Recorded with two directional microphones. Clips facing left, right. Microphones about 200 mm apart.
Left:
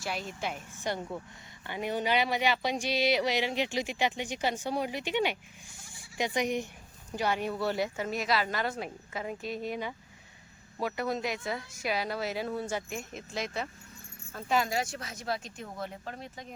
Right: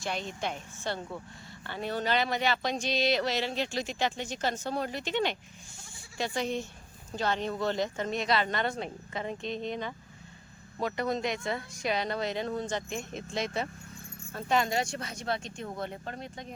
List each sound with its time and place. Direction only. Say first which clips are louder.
0.0 s speech: right 1 dB; 5° left (ahead or behind)